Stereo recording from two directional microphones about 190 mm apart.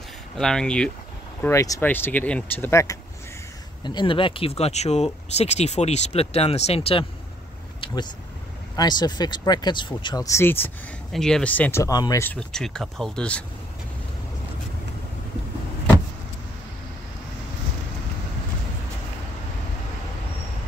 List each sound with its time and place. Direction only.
0.4 s speech: 5° left (ahead or behind)
1.4 s speech: 15° left (ahead or behind)